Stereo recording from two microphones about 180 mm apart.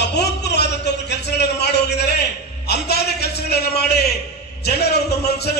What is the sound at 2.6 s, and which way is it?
A man's voice, 65° left (ahead or behind).